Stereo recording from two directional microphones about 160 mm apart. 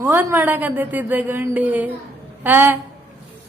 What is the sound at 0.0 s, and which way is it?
A woman's voice, 15° right (ahead or behind).